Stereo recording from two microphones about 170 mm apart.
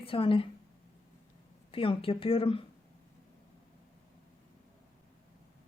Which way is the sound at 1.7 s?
30° left (ahead or behind).